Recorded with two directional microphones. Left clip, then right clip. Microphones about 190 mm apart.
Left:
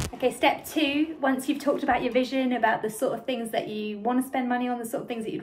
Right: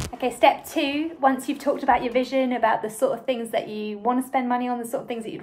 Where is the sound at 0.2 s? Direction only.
20° right (ahead or behind).